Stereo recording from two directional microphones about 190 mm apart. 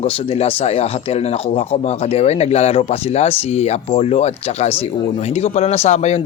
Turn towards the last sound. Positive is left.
turn(degrees=35)  # may be behind; listen again after turning